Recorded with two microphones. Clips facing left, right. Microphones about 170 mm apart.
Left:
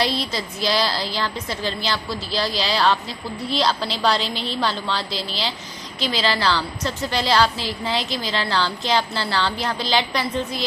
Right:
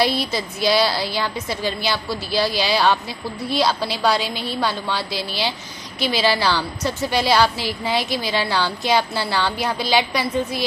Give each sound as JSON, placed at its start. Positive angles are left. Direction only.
{"t": 0.3, "sound": "a woman's voice", "side_deg": -10}